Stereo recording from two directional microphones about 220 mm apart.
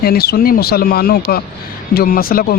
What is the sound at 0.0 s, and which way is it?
A man's voice, 45° left (ahead or behind).